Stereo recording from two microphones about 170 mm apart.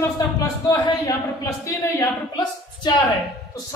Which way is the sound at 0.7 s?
25° left (ahead or behind).